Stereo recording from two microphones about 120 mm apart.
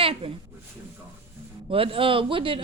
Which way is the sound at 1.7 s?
50° right (ahead or behind).